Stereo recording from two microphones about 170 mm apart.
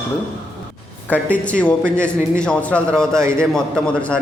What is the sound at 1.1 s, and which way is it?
A man's voice, 10° left (ahead or behind).